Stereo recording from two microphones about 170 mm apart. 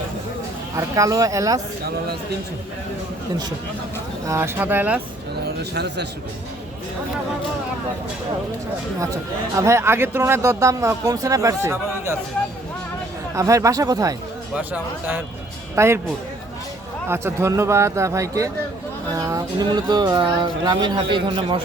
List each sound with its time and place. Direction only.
0.8 s speech: 20° right (ahead or behind)
4.3 s speech: 15° right (ahead or behind)
5.5 s a man's voice: 75° right (ahead or behind)
9.6 s speech: 15° right (ahead or behind)
13.3 s speech: 20° right (ahead or behind)
14.5 s speech: 10° right (ahead or behind)
17.1 s speech: 15° right (ahead or behind)